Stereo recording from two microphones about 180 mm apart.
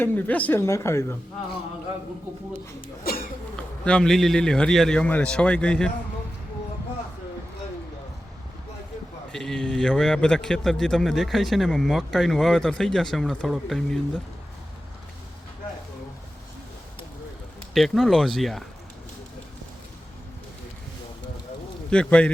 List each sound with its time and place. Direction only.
0.0 s a woman's voice: 10° left (ahead or behind)
2.8 s speech: 55° left (ahead or behind)
3.8 s a man's voice: 5° left (ahead or behind)
9.3 s a man's voice: 5° left (ahead or behind)
17.7 s a man's voice: centre (ahead or behind)
21.8 s speech: 5° left (ahead or behind)